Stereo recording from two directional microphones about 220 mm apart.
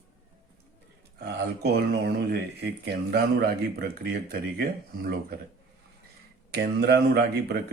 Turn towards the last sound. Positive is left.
turn(degrees=-45)  # may be behind; listen again after turning